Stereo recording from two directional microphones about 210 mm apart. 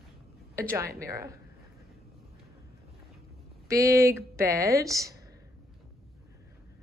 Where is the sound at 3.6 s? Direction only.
15° right (ahead or behind).